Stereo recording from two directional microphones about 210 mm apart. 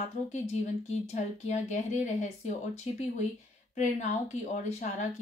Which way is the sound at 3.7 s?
35° left (ahead or behind).